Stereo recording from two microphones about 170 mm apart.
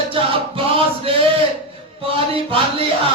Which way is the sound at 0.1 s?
30° right (ahead or behind).